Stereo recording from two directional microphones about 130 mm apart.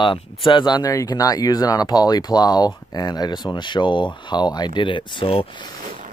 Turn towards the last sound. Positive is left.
turn(degrees=45)  # may be behind; listen again after turning